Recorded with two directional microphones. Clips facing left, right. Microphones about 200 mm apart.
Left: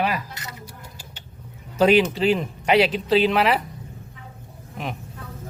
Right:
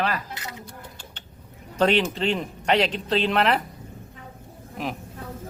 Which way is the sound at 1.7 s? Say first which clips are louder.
Left 4 dB; 5° left (ahead or behind).